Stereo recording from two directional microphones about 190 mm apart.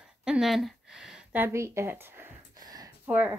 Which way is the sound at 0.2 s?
5° right (ahead or behind).